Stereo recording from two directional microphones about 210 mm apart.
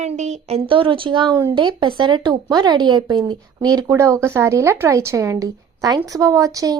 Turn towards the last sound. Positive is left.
turn(degrees=-15)  # may be behind; listen again after turning